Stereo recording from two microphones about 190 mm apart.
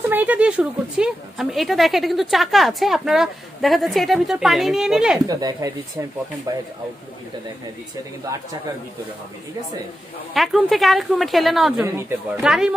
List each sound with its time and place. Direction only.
0.1 s a woman's voice: 10° right (ahead or behind)
5.2 s speech: 20° right (ahead or behind)
10.3 s a woman's voice: centre (ahead or behind)